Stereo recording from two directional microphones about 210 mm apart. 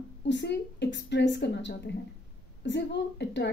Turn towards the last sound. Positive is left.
turn(degrees=55)  # may be behind; listen again after turning